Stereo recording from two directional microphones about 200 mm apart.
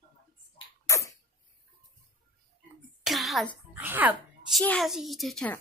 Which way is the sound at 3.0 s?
Centre (ahead or behind).